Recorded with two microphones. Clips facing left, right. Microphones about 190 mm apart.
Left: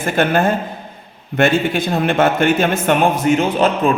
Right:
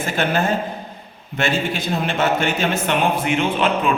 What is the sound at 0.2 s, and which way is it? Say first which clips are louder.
Speech: left 5 dB; 55° left (ahead or behind).